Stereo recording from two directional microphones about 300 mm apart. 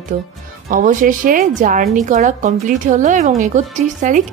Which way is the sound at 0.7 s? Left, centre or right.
Right.